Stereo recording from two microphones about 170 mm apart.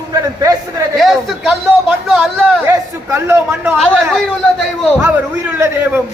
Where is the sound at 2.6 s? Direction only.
15° right (ahead or behind).